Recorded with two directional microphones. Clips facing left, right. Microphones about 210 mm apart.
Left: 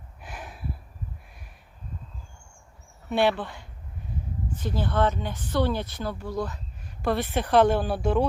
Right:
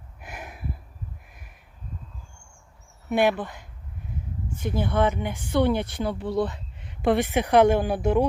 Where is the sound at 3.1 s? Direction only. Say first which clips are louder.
Right 1 dB; 10° right (ahead or behind).